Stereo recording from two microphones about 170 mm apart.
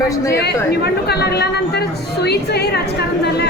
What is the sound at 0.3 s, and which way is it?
A woman's voice, 75° left (ahead or behind).